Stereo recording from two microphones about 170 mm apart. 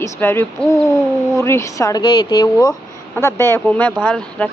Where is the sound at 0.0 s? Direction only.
15° left (ahead or behind).